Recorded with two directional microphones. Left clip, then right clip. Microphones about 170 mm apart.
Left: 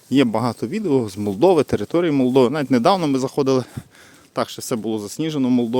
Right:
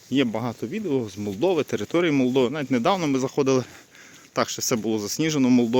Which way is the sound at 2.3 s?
45° left (ahead or behind).